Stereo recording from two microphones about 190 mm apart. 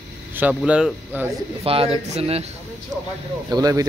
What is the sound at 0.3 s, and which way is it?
Vehicle, 10° right (ahead or behind).